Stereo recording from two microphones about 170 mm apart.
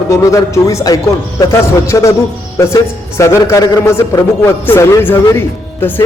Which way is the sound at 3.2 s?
15° left (ahead or behind).